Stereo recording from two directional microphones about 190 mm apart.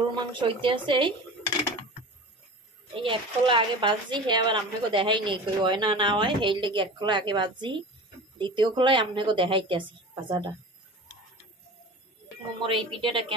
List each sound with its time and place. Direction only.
0.1 s speech: 25° right (ahead or behind)
2.9 s speech: 25° right (ahead or behind)
12.6 s speech: 25° right (ahead or behind)